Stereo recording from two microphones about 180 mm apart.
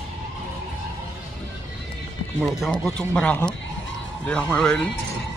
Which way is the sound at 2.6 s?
5° left (ahead or behind).